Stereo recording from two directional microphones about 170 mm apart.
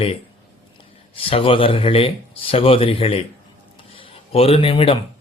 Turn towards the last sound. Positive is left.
turn(degrees=35)  # may be behind; listen again after turning